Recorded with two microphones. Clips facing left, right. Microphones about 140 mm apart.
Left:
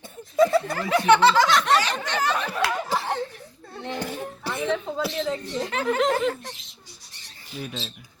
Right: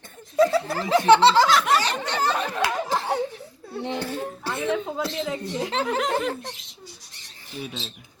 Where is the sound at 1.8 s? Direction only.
30° right (ahead or behind).